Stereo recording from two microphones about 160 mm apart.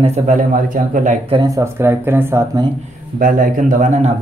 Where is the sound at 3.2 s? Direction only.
55° right (ahead or behind).